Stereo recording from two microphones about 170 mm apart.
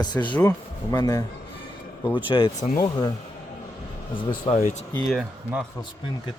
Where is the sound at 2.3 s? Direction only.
30° left (ahead or behind).